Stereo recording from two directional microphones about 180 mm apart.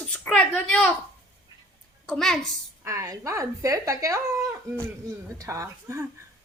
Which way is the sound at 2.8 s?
15° right (ahead or behind).